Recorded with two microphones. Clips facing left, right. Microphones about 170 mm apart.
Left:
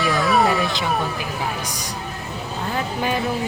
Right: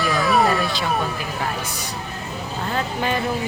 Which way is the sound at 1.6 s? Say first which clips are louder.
Even; 15° left (ahead or behind).